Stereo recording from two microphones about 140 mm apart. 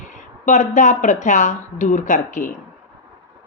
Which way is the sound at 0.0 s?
60° left (ahead or behind).